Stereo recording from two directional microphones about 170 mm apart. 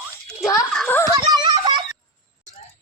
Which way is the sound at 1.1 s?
30° right (ahead or behind).